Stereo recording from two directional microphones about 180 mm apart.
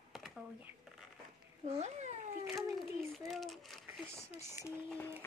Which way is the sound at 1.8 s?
35° right (ahead or behind).